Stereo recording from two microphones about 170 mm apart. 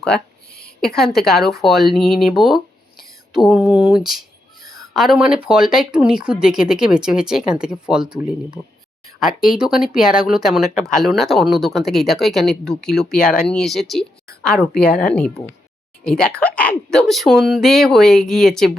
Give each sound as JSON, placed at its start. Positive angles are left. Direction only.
{"t": 0.6, "sound": "speech", "side_deg": 5}
{"t": 4.6, "sound": "a sound", "side_deg": -20}
{"t": 4.9, "sound": "speech", "side_deg": 0}
{"t": 9.6, "sound": "speech", "side_deg": -5}